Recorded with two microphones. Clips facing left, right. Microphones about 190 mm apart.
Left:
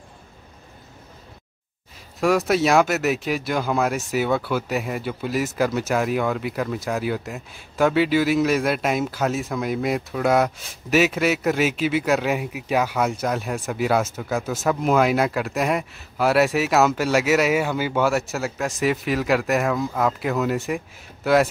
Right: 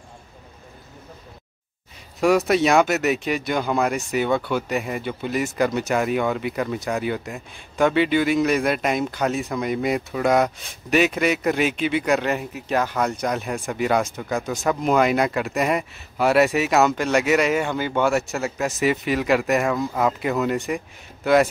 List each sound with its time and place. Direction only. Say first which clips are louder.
2.1 s speech: right 1 dB; centre (ahead or behind)